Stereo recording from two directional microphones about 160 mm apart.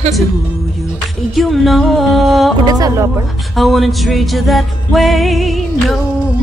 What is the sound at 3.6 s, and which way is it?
Music, centre (ahead or behind).